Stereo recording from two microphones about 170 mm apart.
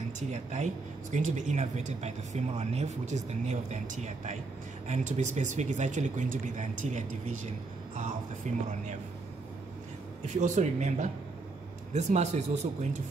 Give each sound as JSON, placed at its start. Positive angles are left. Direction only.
{"t": 0.3, "sound": "speech", "side_deg": -40}
{"t": 8.5, "sound": "speech", "side_deg": -45}
{"t": 10.2, "sound": "speech", "side_deg": -45}